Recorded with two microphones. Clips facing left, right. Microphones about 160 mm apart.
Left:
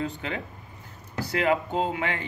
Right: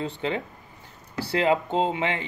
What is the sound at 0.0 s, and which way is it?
Speech, 30° right (ahead or behind).